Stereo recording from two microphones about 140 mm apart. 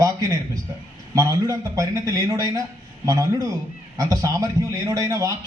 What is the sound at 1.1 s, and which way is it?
A man's voice, 25° right (ahead or behind).